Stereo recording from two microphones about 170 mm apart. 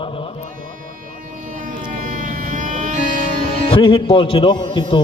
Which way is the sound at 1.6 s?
50° right (ahead or behind).